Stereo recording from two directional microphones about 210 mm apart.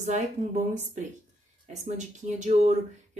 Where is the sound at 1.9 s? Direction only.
35° right (ahead or behind).